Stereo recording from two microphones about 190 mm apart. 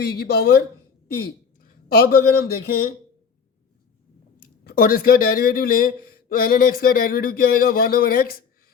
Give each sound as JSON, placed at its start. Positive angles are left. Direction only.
{"t": 0.0, "sound": "speech", "side_deg": 55}
{"t": 1.6, "sound": "speech", "side_deg": 50}
{"t": 4.4, "sound": "speech", "side_deg": 50}